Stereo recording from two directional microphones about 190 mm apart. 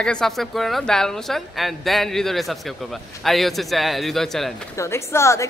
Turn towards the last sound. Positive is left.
turn(degrees=15)  # may be behind; listen again after turning